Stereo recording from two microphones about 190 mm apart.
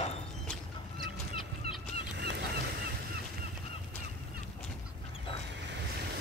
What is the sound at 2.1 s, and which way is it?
Goose, 60° right (ahead or behind).